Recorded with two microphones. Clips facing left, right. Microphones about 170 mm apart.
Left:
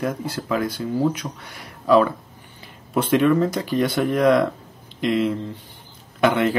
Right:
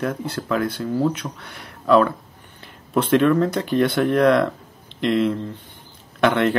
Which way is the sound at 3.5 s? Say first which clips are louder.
Right 2 dB; 55° right (ahead or behind).